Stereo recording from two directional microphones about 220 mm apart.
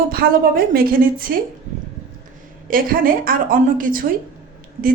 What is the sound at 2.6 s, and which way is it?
A woman's voice, 40° right (ahead or behind).